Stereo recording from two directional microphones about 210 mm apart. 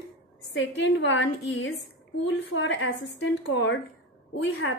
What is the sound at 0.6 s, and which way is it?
A woman's voice, 60° left (ahead or behind).